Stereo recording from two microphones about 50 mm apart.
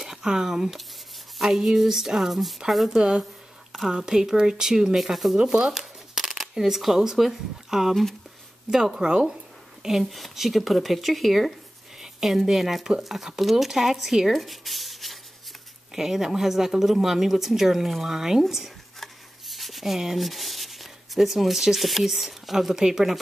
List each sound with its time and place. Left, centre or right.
0.0 s speech: centre
3.0 s speech: centre
7.9 s speech: centre
8.9 s speech: centre
9.8 s speech: centre
12.0 s a sound: centre
12.4 s speech: centre
18.9 s rub: centre